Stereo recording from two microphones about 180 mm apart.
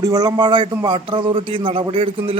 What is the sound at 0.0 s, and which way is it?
A man's voice, 20° right (ahead or behind).